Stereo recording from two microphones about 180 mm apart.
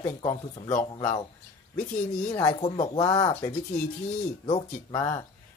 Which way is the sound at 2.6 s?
35° left (ahead or behind).